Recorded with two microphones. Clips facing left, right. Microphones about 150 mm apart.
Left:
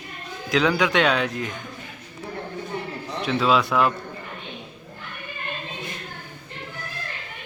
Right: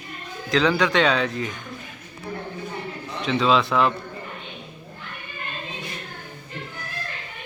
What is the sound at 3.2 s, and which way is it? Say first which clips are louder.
Speech: right 1 dB; 5° left (ahead or behind).